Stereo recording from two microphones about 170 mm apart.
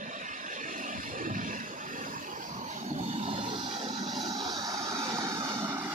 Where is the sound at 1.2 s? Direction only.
50° right (ahead or behind).